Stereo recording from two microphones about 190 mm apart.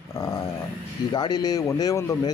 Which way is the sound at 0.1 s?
20° left (ahead or behind).